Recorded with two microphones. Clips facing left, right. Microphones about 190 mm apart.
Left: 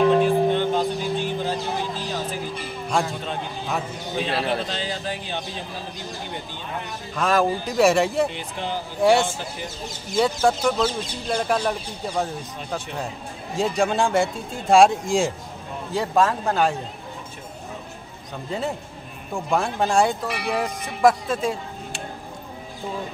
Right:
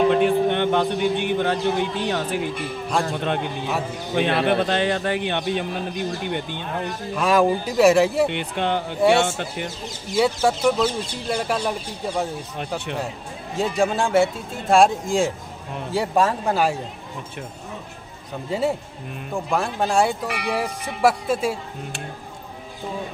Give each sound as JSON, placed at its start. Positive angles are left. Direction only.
{"t": 0.2, "sound": "music", "side_deg": -65}
{"t": 3.1, "sound": "a man's voice", "side_deg": -65}
{"t": 7.2, "sound": "speech", "side_deg": -10}
{"t": 8.3, "sound": "a man's voice", "side_deg": -65}
{"t": 10.1, "sound": "speech", "side_deg": -5}
{"t": 13.6, "sound": "speech", "side_deg": -5}
{"t": 19.3, "sound": "speech", "side_deg": 0}